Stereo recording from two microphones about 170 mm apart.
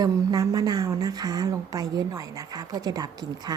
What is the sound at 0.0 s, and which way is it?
A woman's voice, 20° right (ahead or behind).